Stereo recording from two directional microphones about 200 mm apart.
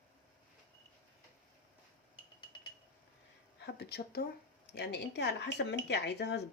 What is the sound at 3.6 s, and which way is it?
Speech, 55° left (ahead or behind).